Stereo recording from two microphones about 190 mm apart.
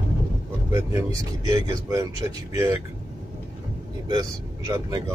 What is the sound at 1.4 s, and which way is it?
Speech, 20° right (ahead or behind).